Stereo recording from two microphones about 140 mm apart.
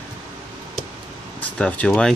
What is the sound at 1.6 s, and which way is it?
Speech, 5° left (ahead or behind).